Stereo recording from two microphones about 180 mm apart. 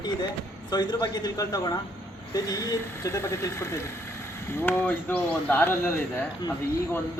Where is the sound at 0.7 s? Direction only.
20° left (ahead or behind).